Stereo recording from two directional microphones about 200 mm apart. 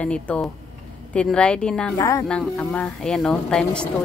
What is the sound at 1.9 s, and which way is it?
Speech, 15° left (ahead or behind).